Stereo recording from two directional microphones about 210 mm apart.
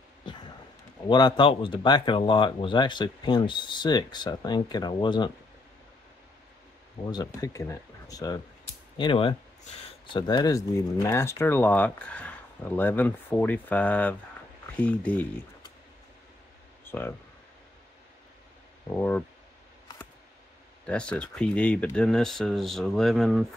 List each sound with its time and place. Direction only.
1.0 s speech: 20° left (ahead or behind)
7.1 s speech: 15° left (ahead or behind)
16.8 s a sound: 10° left (ahead or behind)
18.9 s speech: 5° left (ahead or behind)
20.8 s speech: 5° left (ahead or behind)